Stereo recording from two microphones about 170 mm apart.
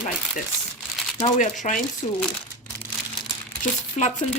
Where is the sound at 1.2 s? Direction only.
50° left (ahead or behind).